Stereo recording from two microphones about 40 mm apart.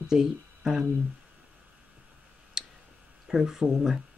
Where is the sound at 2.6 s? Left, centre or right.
Centre.